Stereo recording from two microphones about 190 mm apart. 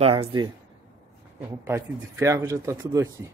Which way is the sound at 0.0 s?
30° right (ahead or behind).